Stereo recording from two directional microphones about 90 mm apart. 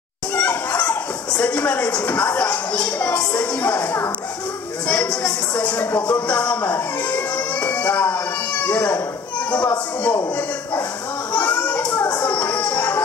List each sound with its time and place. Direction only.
0.4 s speech: 15° left (ahead or behind)
4.8 s speech: 10° left (ahead or behind)
7.6 s music: 20° left (ahead or behind)
9.5 s speech: 20° left (ahead or behind)
11.3 s a sound: 20° left (ahead or behind)
12.2 s music: 20° left (ahead or behind)